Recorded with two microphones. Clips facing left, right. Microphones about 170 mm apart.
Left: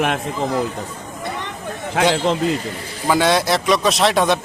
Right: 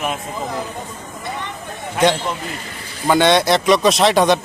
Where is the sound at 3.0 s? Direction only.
Centre (ahead or behind).